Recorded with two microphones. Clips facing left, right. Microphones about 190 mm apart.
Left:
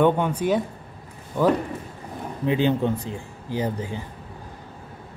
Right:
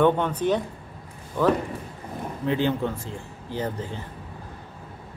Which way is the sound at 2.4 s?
15° left (ahead or behind).